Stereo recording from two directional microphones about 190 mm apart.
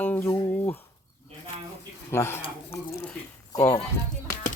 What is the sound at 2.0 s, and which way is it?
Speech, 15° left (ahead or behind).